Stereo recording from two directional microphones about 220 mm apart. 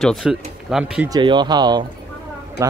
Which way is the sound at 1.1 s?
20° right (ahead or behind).